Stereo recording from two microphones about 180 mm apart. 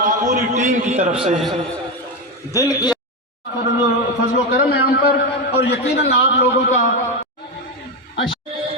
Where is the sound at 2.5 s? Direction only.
20° left (ahead or behind).